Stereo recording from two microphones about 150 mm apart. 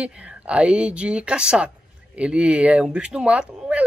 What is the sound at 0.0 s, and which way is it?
Speech, 10° right (ahead or behind).